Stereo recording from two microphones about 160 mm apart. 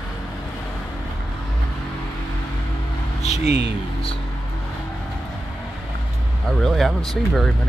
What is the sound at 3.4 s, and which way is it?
Speech, 90° right.